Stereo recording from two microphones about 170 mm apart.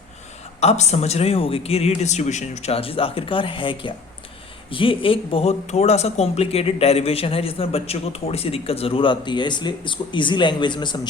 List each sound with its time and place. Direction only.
0.6 s speech: 40° left (ahead or behind)